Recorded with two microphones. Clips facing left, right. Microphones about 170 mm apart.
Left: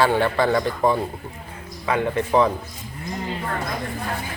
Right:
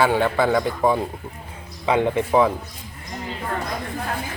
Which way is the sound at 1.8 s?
20° right (ahead or behind).